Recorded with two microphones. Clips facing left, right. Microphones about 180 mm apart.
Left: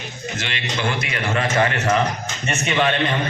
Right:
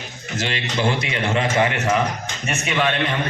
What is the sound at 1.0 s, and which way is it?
A man's voice, 25° right (ahead or behind).